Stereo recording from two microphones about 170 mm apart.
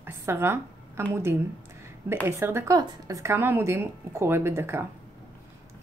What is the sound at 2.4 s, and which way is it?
A woman's voice, 15° right (ahead or behind).